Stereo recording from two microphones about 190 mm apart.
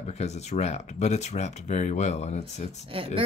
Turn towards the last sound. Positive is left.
turn(degrees=-30)  # may be behind; listen again after turning